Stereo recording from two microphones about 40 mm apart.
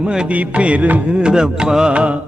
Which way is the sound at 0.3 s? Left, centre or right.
Right.